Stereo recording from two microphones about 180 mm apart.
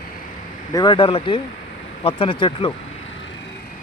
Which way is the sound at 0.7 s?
25° left (ahead or behind).